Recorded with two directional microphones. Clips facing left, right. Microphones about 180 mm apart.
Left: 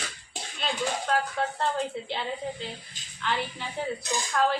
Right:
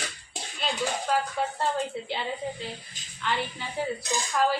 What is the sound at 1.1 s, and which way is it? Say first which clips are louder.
A woman's voice: even; 5° right (ahead or behind).